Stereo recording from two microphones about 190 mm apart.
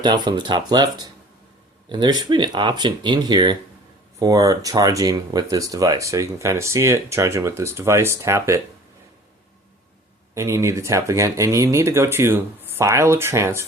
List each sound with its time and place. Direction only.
0.0 s speech: 25° right (ahead or behind)
10.3 s speech: 15° right (ahead or behind)